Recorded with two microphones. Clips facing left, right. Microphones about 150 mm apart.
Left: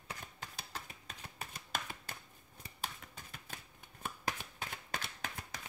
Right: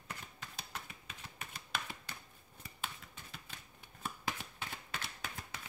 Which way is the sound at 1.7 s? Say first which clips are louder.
Left 1 dB; 45° left (ahead or behind).